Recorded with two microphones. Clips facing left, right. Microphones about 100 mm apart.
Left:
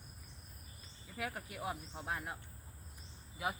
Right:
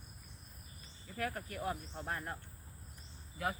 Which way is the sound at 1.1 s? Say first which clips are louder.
Right 3 dB; 10° left (ahead or behind).